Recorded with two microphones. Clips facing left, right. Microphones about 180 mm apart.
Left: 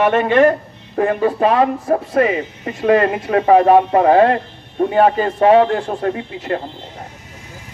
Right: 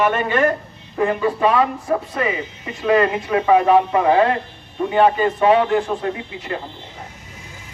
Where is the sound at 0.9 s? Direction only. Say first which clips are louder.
Left 3 dB; 45° left (ahead or behind).